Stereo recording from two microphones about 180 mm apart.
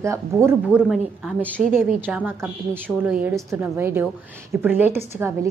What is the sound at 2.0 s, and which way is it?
A woman's voice, 10° right (ahead or behind).